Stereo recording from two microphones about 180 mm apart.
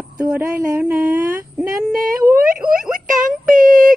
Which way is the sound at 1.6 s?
Centre (ahead or behind).